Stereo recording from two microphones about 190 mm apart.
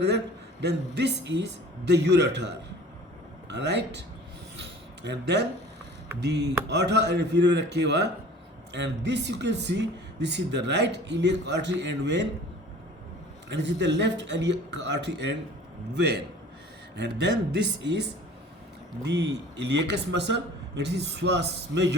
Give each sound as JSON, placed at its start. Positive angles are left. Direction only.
{"t": 0.6, "sound": "speech", "side_deg": -65}
{"t": 5.0, "sound": "speech", "side_deg": -65}
{"t": 13.5, "sound": "speech", "side_deg": -65}